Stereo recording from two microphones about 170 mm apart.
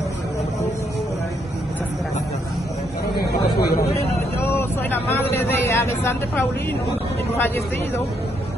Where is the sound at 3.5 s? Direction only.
65° left (ahead or behind).